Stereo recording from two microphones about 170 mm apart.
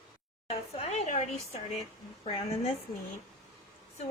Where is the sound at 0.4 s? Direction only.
35° left (ahead or behind).